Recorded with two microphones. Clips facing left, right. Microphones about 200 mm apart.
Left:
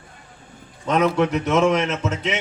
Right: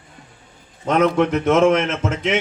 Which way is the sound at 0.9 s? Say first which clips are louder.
Right 2 dB; 55° right (ahead or behind).